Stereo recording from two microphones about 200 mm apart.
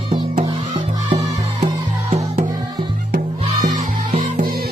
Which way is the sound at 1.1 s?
30° right (ahead or behind).